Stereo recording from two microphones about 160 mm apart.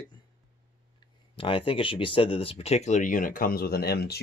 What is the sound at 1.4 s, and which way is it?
Speech, 35° left (ahead or behind).